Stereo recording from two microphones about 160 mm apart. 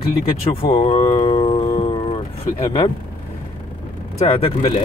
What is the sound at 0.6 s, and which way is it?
Speech, 35° left (ahead or behind).